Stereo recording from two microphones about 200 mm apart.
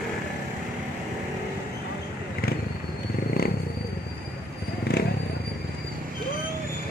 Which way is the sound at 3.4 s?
50° left (ahead or behind).